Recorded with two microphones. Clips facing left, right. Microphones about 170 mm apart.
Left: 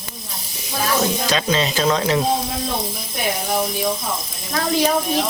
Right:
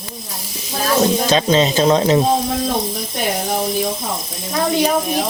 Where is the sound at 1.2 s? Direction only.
25° right (ahead or behind).